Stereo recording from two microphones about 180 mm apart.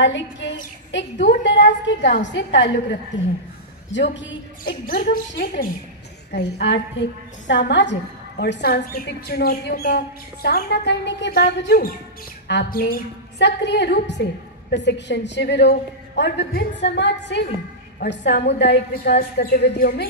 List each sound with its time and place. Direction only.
0.0 s a woman's voice: 85° left
3.9 s a woman's voice: 85° left
4.8 s speech: 55° left (ahead or behind)
5.3 s a woman's voice: 75° left (ahead or behind); by 11.9 s 60° left (ahead or behind)
12.4 s a woman's voice: 75° left (ahead or behind)